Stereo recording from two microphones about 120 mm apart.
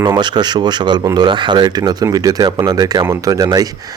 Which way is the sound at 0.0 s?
35° right (ahead or behind).